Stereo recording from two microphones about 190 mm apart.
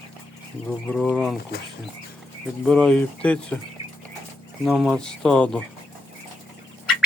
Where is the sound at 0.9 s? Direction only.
5° left (ahead or behind).